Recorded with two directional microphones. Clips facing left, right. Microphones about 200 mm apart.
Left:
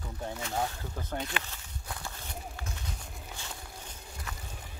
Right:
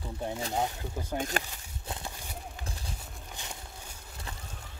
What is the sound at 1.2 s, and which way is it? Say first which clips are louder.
Speech: right 4 dB; 45° right (ahead or behind).